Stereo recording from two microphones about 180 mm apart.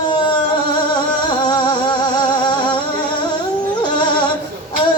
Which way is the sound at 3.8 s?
25° left (ahead or behind).